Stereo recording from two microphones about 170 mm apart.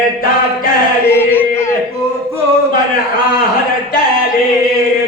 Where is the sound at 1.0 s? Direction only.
15° left (ahead or behind).